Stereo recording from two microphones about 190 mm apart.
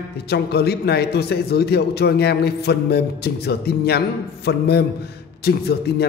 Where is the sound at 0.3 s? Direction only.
60° left (ahead or behind).